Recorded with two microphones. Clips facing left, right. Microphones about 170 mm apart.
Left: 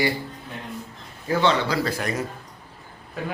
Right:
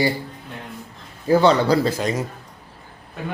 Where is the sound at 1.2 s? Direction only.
35° right (ahead or behind).